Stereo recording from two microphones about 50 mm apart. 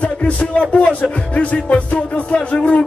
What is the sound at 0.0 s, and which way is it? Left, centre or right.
Music, left.